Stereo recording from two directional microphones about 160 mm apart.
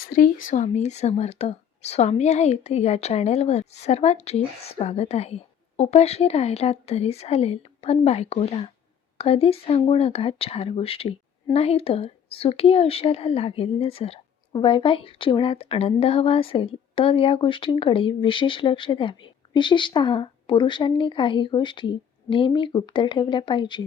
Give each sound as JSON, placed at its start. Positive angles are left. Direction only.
{"t": 0.1, "sound": "a woman's voice", "side_deg": 60}